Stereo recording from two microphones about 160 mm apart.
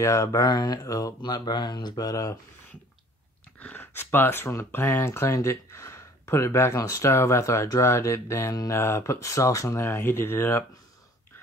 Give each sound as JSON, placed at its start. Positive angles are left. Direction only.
{"t": 0.0, "sound": "speech", "side_deg": 20}
{"t": 3.5, "sound": "speech", "side_deg": 10}